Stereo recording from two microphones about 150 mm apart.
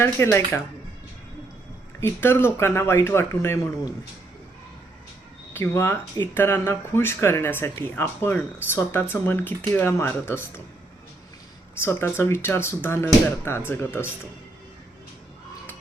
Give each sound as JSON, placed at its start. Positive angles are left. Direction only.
{"t": 0.0, "sound": "speech", "side_deg": 15}
{"t": 2.0, "sound": "speech", "side_deg": 15}
{"t": 5.5, "sound": "speech", "side_deg": 15}
{"t": 11.7, "sound": "speech", "side_deg": 15}